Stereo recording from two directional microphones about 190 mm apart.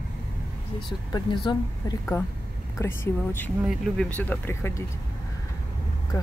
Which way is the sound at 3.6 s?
Centre (ahead or behind).